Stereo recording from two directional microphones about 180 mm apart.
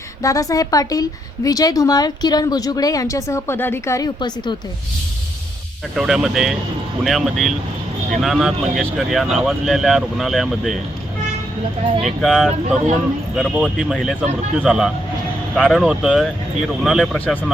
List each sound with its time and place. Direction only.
0.2 s speech: 20° left (ahead or behind)
6.0 s speech: 5° right (ahead or behind)
12.0 s speech: centre (ahead or behind)